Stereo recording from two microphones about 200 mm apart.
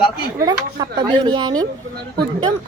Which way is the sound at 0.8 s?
20° right (ahead or behind).